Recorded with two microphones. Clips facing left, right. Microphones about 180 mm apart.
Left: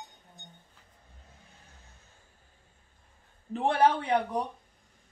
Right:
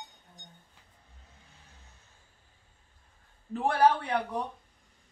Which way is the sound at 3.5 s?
20° left (ahead or behind).